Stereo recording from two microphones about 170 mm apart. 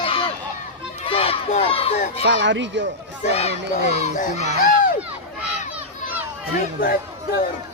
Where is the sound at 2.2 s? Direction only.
90° right.